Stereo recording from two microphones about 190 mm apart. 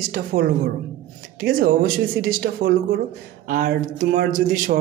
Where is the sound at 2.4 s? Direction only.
65° right (ahead or behind).